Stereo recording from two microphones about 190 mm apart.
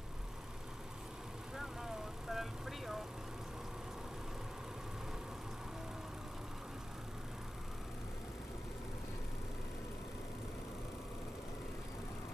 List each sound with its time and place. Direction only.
1.6 s vehicle: centre (ahead or behind)